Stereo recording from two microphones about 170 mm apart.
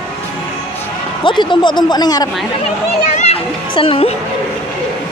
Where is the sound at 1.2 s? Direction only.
25° left (ahead or behind).